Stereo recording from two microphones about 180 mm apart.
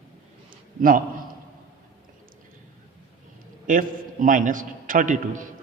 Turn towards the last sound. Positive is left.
turn(degrees=-45)  # may be behind; listen again after turning